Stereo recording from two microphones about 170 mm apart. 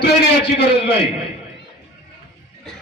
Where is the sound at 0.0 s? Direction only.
80° left.